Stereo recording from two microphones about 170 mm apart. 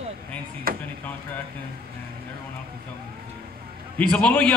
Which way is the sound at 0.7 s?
60° right (ahead or behind).